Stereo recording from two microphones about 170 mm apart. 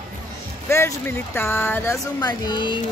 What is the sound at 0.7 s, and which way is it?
Speech, 15° left (ahead or behind).